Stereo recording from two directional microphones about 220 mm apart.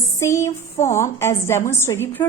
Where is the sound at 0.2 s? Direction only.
15° left (ahead or behind).